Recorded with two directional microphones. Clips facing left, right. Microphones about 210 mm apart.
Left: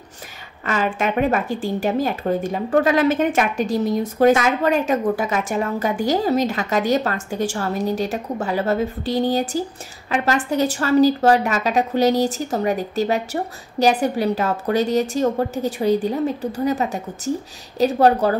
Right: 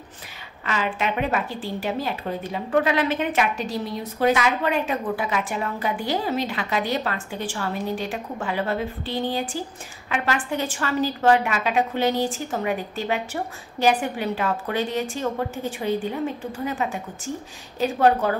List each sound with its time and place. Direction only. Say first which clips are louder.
0.7 s a woman's voice: left 4 dB; 45° left (ahead or behind)